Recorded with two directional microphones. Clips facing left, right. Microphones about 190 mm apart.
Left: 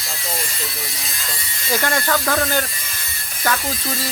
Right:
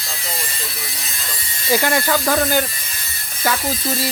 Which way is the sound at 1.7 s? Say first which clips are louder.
Right 2 dB; 10° right (ahead or behind).